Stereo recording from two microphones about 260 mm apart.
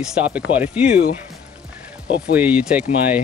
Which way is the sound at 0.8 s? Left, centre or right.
Left.